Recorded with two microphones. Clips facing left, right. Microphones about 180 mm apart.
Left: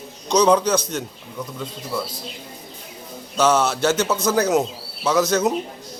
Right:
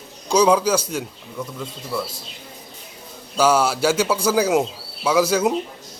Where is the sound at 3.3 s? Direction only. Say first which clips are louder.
Right 1 dB; 10° right (ahead or behind).